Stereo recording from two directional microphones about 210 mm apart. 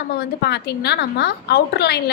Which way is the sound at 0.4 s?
50° left (ahead or behind).